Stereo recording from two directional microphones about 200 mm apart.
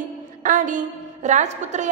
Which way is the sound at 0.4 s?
40° right (ahead or behind).